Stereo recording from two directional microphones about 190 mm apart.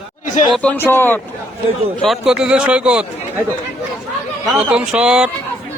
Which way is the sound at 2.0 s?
Centre (ahead or behind).